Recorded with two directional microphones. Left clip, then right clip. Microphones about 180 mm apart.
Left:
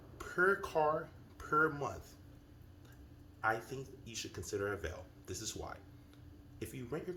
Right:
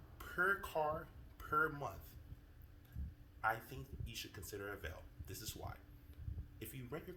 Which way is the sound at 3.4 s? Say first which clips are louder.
Left 4 dB; 25° right (ahead or behind).